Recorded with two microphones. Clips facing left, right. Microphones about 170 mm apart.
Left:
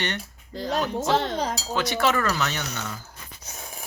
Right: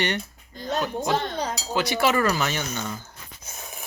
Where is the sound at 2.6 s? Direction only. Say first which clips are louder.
Right 2 dB; 75° left (ahead or behind).